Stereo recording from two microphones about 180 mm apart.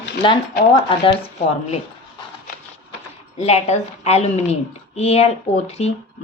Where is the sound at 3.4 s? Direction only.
35° left (ahead or behind).